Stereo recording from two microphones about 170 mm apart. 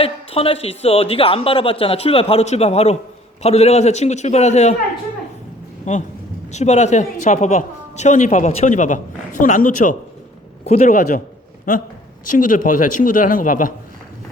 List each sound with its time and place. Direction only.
0.0 s speech: 35° left (ahead or behind)
5.9 s speech: 45° left (ahead or behind)